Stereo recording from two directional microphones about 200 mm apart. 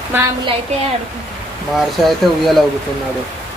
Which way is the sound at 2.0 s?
Centre (ahead or behind).